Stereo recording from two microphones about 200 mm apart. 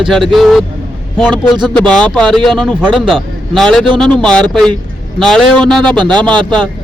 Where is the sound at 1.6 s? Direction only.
5° left (ahead or behind).